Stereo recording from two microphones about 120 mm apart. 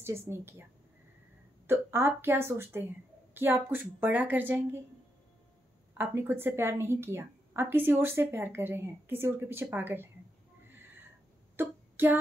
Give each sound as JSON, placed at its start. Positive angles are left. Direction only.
{"t": 0.3, "sound": "a woman's voice", "side_deg": -20}
{"t": 1.7, "sound": "a woman's voice", "side_deg": -20}
{"t": 5.9, "sound": "a woman's voice", "side_deg": -20}
{"t": 11.5, "sound": "a sound", "side_deg": -15}